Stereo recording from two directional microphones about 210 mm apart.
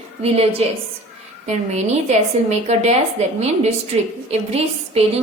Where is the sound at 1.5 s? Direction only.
30° right (ahead or behind).